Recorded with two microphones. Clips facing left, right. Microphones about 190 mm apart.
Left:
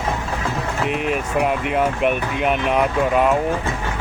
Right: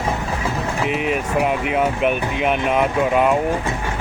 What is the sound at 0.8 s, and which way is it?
Speech, centre (ahead or behind).